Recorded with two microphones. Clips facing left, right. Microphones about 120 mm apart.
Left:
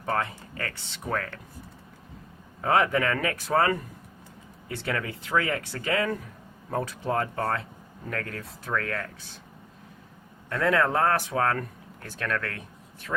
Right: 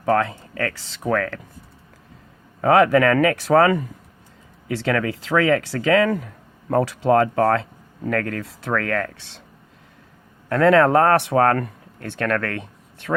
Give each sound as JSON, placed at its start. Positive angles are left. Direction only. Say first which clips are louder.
{"t": 0.0, "sound": "speech", "louder": "right 9 dB", "side_deg": -90}
{"t": 2.6, "sound": "speech", "louder": "right 8 dB", "side_deg": -80}
{"t": 10.5, "sound": "speech", "louder": "right 9 dB", "side_deg": -75}